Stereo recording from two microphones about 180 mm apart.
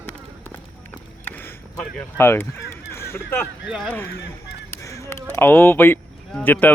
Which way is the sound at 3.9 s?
15° left (ahead or behind).